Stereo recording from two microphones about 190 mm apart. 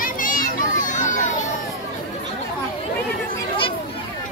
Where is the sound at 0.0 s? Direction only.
45° left (ahead or behind).